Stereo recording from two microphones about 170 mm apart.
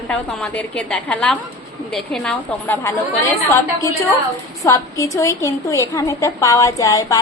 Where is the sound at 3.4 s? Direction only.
15° left (ahead or behind).